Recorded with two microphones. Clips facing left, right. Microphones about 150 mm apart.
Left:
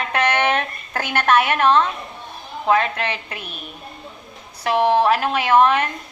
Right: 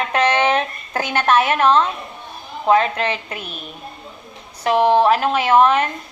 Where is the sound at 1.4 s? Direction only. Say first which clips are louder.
Right 1 dB; 30° right (ahead or behind).